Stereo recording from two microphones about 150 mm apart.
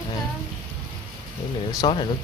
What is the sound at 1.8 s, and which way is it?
Speech, 35° left (ahead or behind).